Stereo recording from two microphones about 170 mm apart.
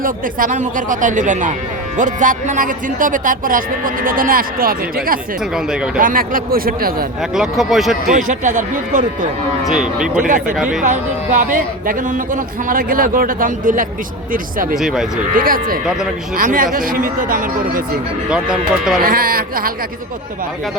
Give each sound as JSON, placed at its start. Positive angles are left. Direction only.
{"t": 0.0, "sound": "speech", "side_deg": -50}
{"t": 5.5, "sound": "speech", "side_deg": -5}
{"t": 6.0, "sound": "speech", "side_deg": -55}
{"t": 7.2, "sound": "speech", "side_deg": -5}
{"t": 8.1, "sound": "speech", "side_deg": -45}
{"t": 9.6, "sound": "speech", "side_deg": -5}
{"t": 10.2, "sound": "speech", "side_deg": -50}
{"t": 10.6, "sound": "speech", "side_deg": 0}
{"t": 10.8, "sound": "speech", "side_deg": -50}
{"t": 14.8, "sound": "speech", "side_deg": -5}
{"t": 15.4, "sound": "speech", "side_deg": -55}
{"t": 18.3, "sound": "speech", "side_deg": -5}
{"t": 19.0, "sound": "speech", "side_deg": -60}